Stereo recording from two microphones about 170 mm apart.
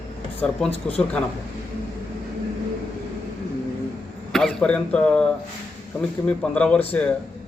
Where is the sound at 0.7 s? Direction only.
35° left (ahead or behind).